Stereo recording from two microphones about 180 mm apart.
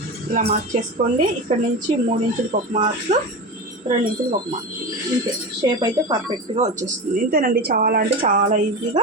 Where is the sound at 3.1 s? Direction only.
35° right (ahead or behind).